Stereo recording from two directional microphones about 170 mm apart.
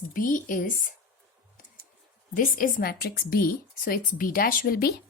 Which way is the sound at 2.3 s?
55° left (ahead or behind).